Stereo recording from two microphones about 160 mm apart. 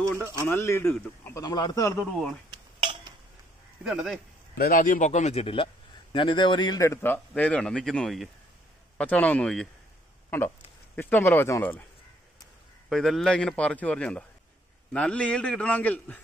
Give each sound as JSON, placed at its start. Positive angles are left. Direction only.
{"t": 0.5, "sound": "a man's voice", "side_deg": 15}
{"t": 2.5, "sound": "dishes", "side_deg": -30}
{"t": 3.8, "sound": "speech", "side_deg": 0}
{"t": 4.6, "sound": "a man's voice", "side_deg": 65}
{"t": 11.0, "sound": "a man's voice", "side_deg": 15}
{"t": 12.9, "sound": "a man's voice", "side_deg": 0}